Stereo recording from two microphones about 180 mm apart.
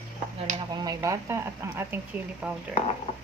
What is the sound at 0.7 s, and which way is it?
Speech, 20° right (ahead or behind).